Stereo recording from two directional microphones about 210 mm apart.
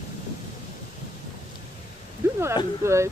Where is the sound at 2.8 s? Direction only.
15° right (ahead or behind).